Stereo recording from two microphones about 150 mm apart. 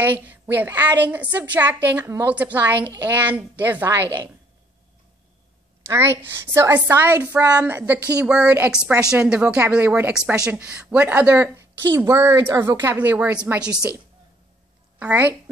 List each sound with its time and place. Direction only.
0.0 s speech: 15° right (ahead or behind)
5.9 s speech: 15° right (ahead or behind)
15.0 s a woman's voice: 10° right (ahead or behind)